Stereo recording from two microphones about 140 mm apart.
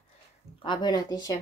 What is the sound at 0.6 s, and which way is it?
Speech, 35° left (ahead or behind).